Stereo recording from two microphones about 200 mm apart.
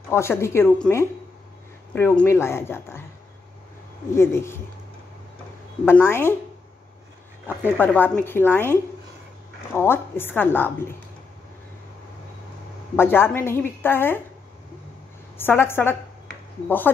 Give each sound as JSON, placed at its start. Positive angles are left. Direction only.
{"t": 0.1, "sound": "a woman's voice", "side_deg": 10}
{"t": 4.1, "sound": "a woman's voice", "side_deg": 15}
{"t": 5.9, "sound": "a woman's voice", "side_deg": 10}
{"t": 7.7, "sound": "a woman's voice", "side_deg": 10}
{"t": 9.8, "sound": "a woman's voice", "side_deg": 10}
{"t": 12.9, "sound": "a woman's voice", "side_deg": 10}
{"t": 15.3, "sound": "a woman's voice", "side_deg": 10}